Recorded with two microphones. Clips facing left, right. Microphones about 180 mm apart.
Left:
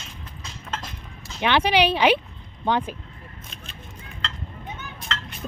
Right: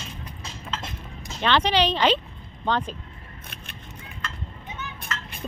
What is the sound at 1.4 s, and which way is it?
Speech, 10° left (ahead or behind).